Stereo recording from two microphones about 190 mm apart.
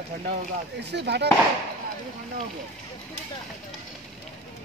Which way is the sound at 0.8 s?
65° right (ahead or behind).